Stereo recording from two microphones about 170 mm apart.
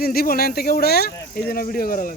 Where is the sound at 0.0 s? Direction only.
60° left (ahead or behind).